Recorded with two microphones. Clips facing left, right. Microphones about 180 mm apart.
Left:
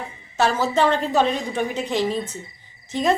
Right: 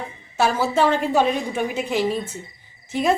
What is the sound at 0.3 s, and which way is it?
A woman's voice, 10° right (ahead or behind).